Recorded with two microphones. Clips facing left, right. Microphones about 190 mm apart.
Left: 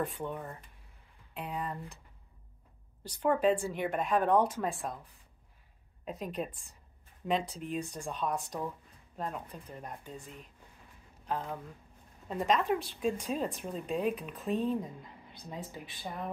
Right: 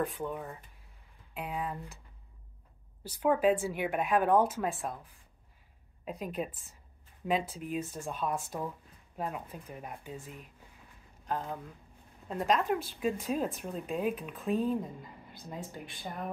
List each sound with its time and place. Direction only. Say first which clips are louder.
0.0 s speech: right 1 dB; centre (ahead or behind)
3.0 s speech: right 1 dB; 5° right (ahead or behind)